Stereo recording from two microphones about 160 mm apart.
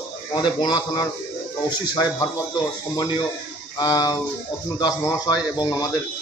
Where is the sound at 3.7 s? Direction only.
25° left (ahead or behind).